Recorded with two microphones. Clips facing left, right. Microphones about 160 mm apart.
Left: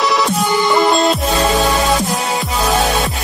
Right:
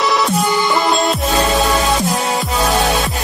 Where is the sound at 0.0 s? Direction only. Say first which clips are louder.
Even; centre (ahead or behind).